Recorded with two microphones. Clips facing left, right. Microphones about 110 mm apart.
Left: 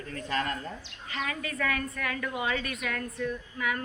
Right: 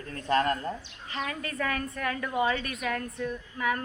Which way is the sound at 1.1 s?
30° right (ahead or behind).